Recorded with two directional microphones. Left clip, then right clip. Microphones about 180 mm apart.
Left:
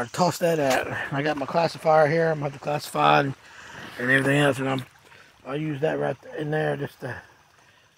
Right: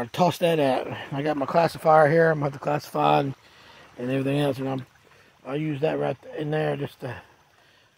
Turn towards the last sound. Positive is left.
turn(degrees=0)  # may be behind; listen again after turning